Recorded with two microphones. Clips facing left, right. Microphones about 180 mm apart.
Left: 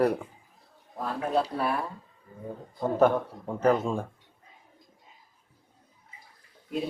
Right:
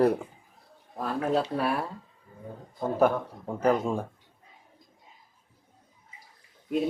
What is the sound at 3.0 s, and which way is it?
A man's voice, 10° right (ahead or behind).